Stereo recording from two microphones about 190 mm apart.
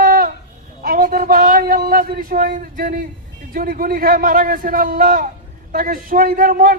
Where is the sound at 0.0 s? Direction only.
50° right (ahead or behind).